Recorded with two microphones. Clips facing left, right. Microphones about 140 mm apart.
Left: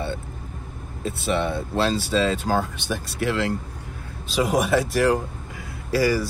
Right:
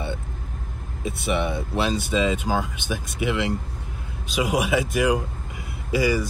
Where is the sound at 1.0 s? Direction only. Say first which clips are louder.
Left 1 dB; 15° right (ahead or behind).